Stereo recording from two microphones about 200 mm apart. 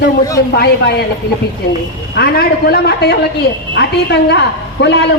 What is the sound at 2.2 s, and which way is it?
A man's voice, 55° left (ahead or behind).